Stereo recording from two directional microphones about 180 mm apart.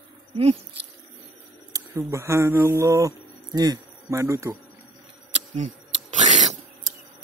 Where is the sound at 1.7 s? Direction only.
15° right (ahead or behind).